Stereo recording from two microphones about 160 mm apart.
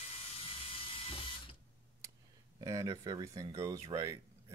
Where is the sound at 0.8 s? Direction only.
35° left (ahead or behind).